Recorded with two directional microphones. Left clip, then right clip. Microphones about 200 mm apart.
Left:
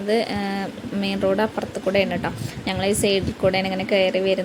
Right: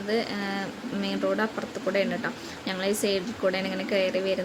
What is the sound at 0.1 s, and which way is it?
Speech, 20° left (ahead or behind).